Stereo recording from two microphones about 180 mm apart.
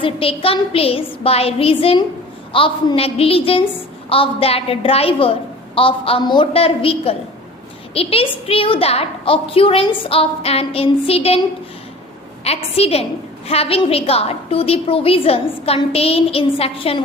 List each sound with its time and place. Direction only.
0.0 s a woman's voice: 30° left (ahead or behind)
12.5 s a woman's voice: 35° left (ahead or behind)